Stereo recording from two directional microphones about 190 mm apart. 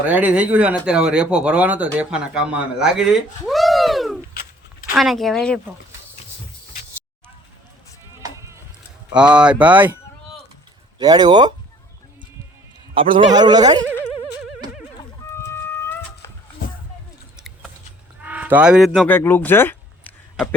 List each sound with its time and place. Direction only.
0.0 s speech: 10° right (ahead or behind)
9.1 s speech: 5° right (ahead or behind)
11.0 s speech: 20° right (ahead or behind)
13.1 s speech: 25° right (ahead or behind)
14.9 s a sound: 15° left (ahead or behind)
17.3 s a sound: centre (ahead or behind)
18.2 s speech: 5° right (ahead or behind)
19.0 s speech: 10° left (ahead or behind)